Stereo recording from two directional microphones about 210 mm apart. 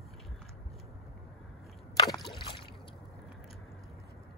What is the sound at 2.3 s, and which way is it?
Boat, 20° left (ahead or behind).